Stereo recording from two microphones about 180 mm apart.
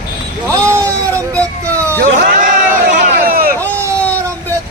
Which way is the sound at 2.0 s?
45° right (ahead or behind).